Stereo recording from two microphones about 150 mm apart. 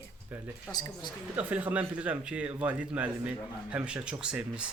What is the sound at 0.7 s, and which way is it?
Speech, 25° left (ahead or behind).